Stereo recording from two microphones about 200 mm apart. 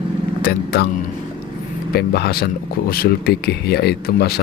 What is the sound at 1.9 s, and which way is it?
Speech, 50° left (ahead or behind).